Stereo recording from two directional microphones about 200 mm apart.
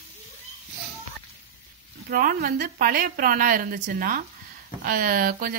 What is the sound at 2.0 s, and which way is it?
A woman's voice, 50° right (ahead or behind).